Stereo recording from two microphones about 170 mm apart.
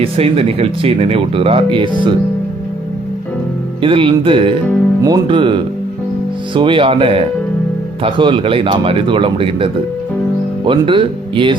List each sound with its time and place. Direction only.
0.0 s speech: 35° right (ahead or behind)
3.8 s speech: 30° right (ahead or behind)
10.7 s speech: 30° right (ahead or behind)